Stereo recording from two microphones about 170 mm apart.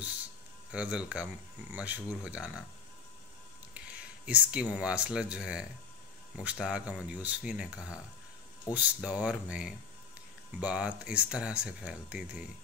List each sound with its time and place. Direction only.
0.7 s speech: 5° right (ahead or behind)
3.7 s speech: 5° right (ahead or behind)